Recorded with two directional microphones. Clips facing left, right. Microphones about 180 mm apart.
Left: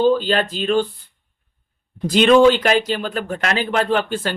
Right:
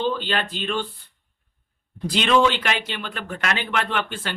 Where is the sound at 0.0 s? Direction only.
40° left (ahead or behind).